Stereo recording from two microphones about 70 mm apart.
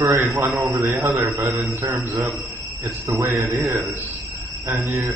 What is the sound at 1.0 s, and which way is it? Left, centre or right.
Speech, right.